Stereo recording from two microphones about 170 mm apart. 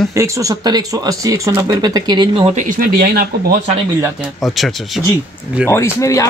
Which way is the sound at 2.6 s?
55° right (ahead or behind).